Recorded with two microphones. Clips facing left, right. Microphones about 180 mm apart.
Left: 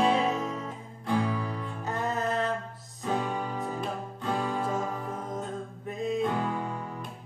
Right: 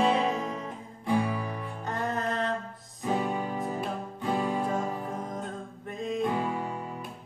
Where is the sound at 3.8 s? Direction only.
10° right (ahead or behind).